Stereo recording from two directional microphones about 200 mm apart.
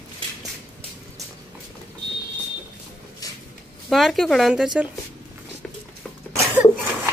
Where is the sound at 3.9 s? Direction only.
Centre (ahead or behind).